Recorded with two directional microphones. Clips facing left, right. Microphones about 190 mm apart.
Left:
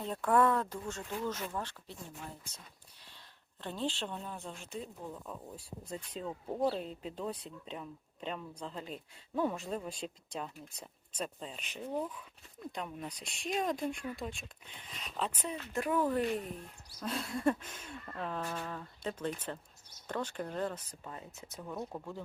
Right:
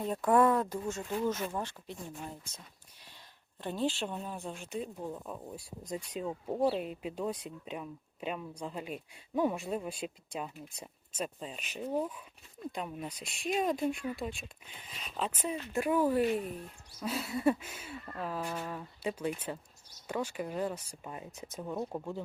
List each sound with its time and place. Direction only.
0.0 s speech: 10° right (ahead or behind)
3.6 s speech: 10° right (ahead or behind)